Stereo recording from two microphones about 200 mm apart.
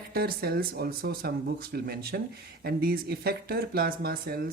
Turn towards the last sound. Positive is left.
turn(degrees=-50)  # may be behind; listen again after turning